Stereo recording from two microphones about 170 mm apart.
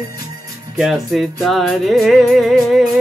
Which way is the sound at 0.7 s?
Centre (ahead or behind).